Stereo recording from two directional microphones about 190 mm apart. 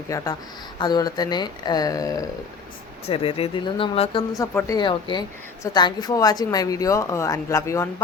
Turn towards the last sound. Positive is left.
turn(degrees=15)  # may be behind; listen again after turning